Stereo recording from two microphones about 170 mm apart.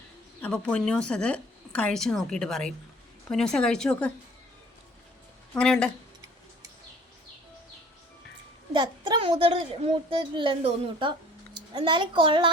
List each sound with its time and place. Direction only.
0.4 s a woman's voice: 5° left (ahead or behind)
5.5 s a woman's voice: 5° left (ahead or behind)
8.7 s a woman's voice: 25° right (ahead or behind)